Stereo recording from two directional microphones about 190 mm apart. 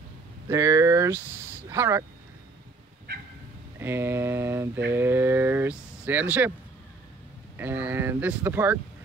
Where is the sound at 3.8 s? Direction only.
10° right (ahead or behind).